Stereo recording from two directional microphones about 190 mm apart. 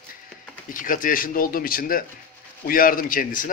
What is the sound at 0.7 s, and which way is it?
A man's voice, 45° left (ahead or behind).